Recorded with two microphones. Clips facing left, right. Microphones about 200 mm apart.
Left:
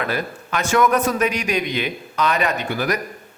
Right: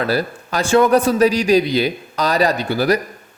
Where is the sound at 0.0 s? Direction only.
35° right (ahead or behind).